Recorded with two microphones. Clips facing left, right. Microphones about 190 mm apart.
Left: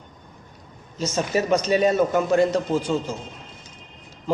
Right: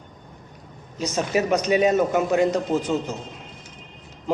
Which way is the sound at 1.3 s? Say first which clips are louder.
Even; 15° right (ahead or behind).